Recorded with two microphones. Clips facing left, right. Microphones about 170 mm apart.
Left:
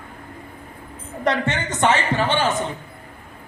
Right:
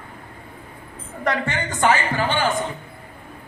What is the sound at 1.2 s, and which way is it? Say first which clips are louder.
A man's voice: left 2 dB; 20° left (ahead or behind).